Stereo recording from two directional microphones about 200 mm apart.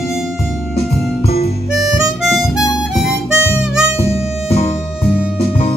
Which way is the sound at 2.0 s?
5° right (ahead or behind).